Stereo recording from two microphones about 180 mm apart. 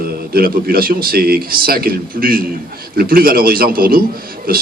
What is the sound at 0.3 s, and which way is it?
Speech, 55° right (ahead or behind).